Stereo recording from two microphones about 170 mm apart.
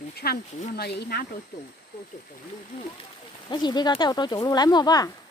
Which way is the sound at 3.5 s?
25° left (ahead or behind).